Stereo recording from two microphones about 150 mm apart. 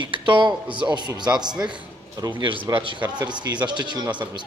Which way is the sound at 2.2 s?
30° right (ahead or behind).